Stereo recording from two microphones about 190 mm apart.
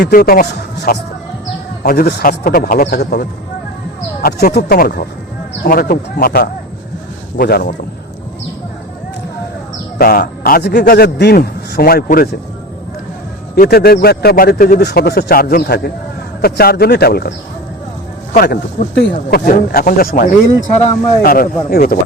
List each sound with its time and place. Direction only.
0.0 s a man's voice: 55° left (ahead or behind)
10.0 s a man's voice: 50° left (ahead or behind)
13.6 s a man's voice: 55° left (ahead or behind)
18.3 s a man's voice: 50° left (ahead or behind)